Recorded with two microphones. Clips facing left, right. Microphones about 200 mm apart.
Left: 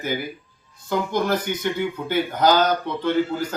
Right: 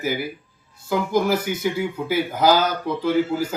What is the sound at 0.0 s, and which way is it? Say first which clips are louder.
Speech: right 2 dB; 5° right (ahead or behind).